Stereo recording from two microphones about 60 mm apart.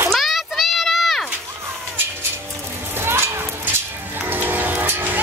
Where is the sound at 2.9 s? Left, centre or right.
Right.